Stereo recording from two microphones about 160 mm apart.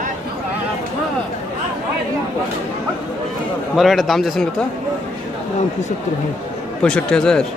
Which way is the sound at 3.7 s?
Centre (ahead or behind).